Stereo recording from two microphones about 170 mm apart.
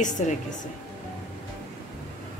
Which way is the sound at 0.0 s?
45° left (ahead or behind).